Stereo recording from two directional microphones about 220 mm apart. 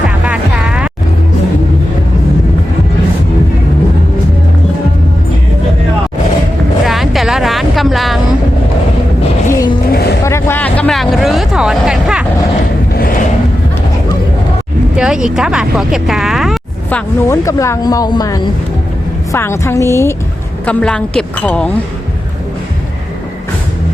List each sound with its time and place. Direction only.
0.3 s music: 5° right (ahead or behind)
6.8 s music: centre (ahead or behind)
9.5 s music: 15° left (ahead or behind)
9.9 s vehicle: 45° left (ahead or behind)
10.2 s vehicle: 10° left (ahead or behind)
12.9 s a sound: 40° left (ahead or behind)
14.9 s a sound: 5° right (ahead or behind)
17.2 s a woman's voice: 15° left (ahead or behind)